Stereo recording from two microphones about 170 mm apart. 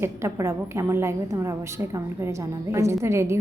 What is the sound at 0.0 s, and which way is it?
A woman's voice, 15° right (ahead or behind).